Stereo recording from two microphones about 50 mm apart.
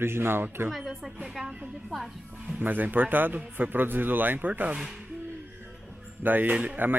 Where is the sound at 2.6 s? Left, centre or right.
Right.